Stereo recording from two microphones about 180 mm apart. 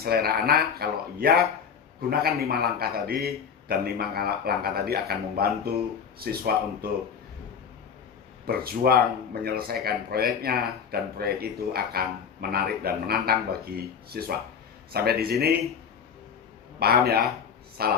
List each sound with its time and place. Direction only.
0.0 s speech: 60° right (ahead or behind)
8.4 s speech: 60° right (ahead or behind)
16.8 s speech: 60° right (ahead or behind)